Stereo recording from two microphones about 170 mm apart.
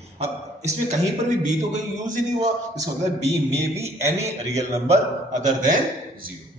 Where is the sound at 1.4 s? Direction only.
45° right (ahead or behind).